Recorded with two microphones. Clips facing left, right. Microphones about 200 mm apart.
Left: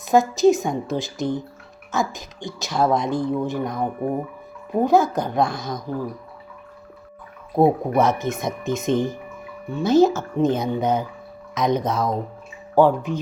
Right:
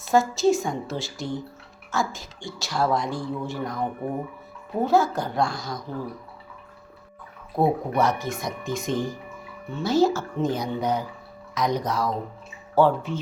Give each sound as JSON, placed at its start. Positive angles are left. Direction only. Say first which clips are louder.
{"t": 0.0, "sound": "a woman's voice", "louder": "left 4 dB", "side_deg": 20}
{"t": 7.5, "sound": "a woman's voice", "louder": "left 5 dB", "side_deg": 20}